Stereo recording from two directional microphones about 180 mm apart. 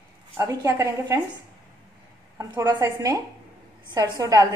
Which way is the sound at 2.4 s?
20° right (ahead or behind).